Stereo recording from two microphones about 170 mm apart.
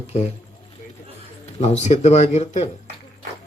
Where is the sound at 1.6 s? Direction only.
40° left (ahead or behind).